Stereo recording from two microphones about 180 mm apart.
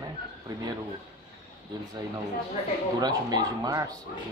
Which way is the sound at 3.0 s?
20° right (ahead or behind).